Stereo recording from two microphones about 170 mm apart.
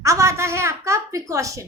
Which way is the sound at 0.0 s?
15° right (ahead or behind).